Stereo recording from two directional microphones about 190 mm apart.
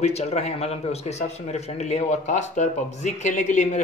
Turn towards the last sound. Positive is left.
turn(degrees=40)  # may be behind; listen again after turning